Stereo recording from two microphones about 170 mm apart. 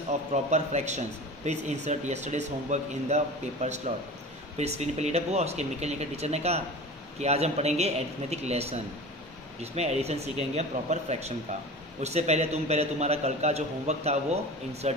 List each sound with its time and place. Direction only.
0.3 s a man's voice: 40° right (ahead or behind)